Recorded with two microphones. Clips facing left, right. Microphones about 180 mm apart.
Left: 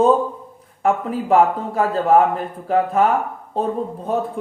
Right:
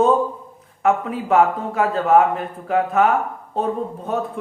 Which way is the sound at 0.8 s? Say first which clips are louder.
Even; 30° left (ahead or behind).